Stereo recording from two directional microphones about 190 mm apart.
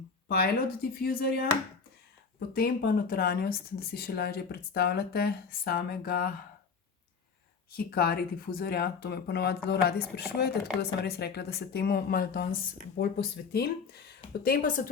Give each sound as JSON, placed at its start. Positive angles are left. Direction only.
{"t": 0.3, "sound": "speech", "side_deg": 55}
{"t": 2.5, "sound": "speech", "side_deg": 50}
{"t": 7.8, "sound": "speech", "side_deg": 55}